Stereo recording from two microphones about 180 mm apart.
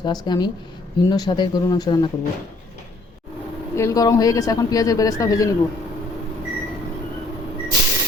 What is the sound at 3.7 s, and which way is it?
Speech, 20° left (ahead or behind).